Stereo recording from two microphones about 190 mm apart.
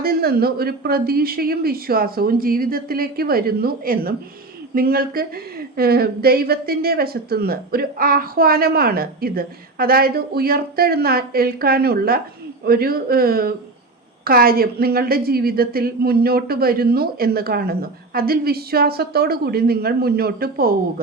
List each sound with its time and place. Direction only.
0.0 s a woman's voice: 55° right (ahead or behind)